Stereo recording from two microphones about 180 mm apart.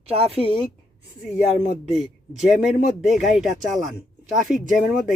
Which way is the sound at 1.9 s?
Centre (ahead or behind).